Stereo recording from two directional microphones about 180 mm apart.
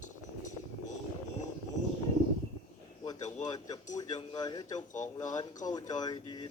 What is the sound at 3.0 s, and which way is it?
A man's voice, 20° left (ahead or behind).